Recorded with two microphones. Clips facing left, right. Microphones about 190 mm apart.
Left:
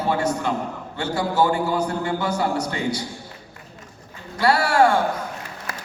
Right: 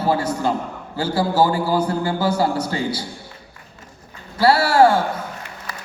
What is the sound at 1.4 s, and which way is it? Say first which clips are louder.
A man's voice: right 1 dB; 30° right (ahead or behind).